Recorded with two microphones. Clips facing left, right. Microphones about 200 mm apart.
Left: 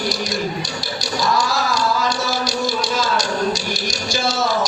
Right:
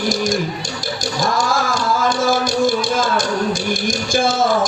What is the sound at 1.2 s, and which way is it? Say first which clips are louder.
Cat: right 1 dB; 50° right (ahead or behind).